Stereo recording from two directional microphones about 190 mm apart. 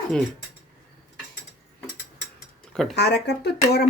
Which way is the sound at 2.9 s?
60° left (ahead or behind).